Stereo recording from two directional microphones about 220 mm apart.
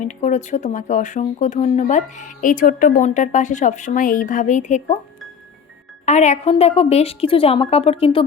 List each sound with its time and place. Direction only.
0.0 s speech: 35° left (ahead or behind)
6.1 s a woman's voice: 30° left (ahead or behind)